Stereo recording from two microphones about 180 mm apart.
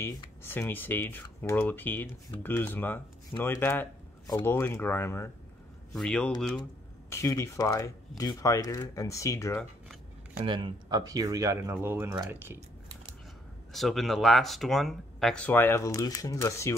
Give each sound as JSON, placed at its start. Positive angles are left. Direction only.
{"t": 0.0, "sound": "speech", "side_deg": 15}
{"t": 7.1, "sound": "speech", "side_deg": 15}
{"t": 10.4, "sound": "speech", "side_deg": -25}
{"t": 13.7, "sound": "speech", "side_deg": 0}